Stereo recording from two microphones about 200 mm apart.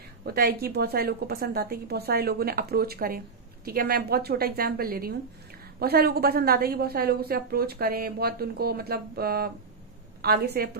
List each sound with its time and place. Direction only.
0.2 s speech: 50° right (ahead or behind)